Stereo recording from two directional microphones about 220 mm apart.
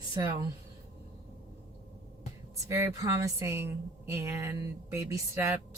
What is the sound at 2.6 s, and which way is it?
A woman's voice, 15° right (ahead or behind).